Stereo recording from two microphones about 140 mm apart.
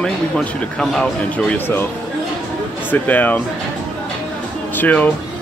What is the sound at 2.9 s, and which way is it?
Speech, 10° left (ahead or behind).